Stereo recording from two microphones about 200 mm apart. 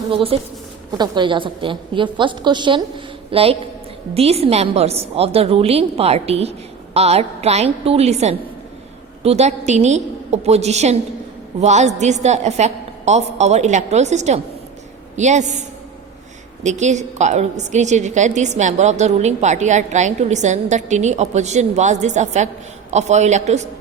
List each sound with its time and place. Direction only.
0.1 s a woman's voice: 25° right (ahead or behind)
16.6 s a woman's voice: 35° right (ahead or behind)